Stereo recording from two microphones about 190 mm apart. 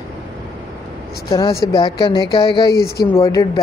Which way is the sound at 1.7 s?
25° left (ahead or behind).